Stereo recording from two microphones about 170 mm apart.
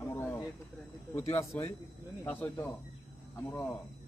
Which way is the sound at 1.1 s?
15° left (ahead or behind).